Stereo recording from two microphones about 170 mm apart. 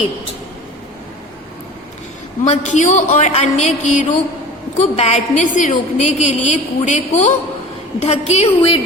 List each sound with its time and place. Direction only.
2.4 s a woman's voice: 45° left (ahead or behind)